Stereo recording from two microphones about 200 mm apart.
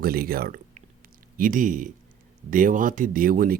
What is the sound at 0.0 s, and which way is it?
Speech, 50° right (ahead or behind).